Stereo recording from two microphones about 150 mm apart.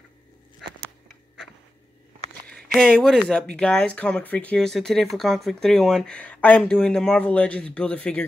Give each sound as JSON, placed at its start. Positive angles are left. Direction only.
{"t": 2.7, "sound": "speech", "side_deg": 0}